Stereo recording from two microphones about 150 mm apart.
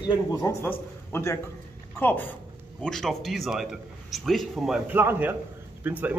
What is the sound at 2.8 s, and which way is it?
A man's voice, centre (ahead or behind).